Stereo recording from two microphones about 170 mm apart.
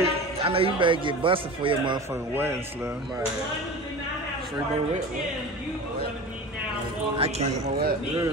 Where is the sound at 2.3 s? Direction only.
15° right (ahead or behind).